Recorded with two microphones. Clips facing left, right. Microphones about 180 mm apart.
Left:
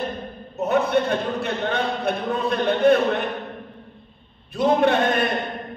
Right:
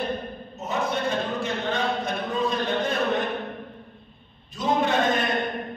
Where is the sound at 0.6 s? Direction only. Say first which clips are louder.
Left 8 dB; 60° left (ahead or behind).